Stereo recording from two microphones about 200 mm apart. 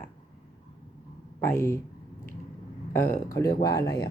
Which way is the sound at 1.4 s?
10° left (ahead or behind).